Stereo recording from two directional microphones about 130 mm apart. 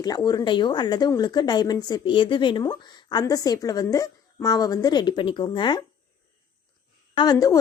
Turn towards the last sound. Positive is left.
turn(degrees=30)  # may be behind; listen again after turning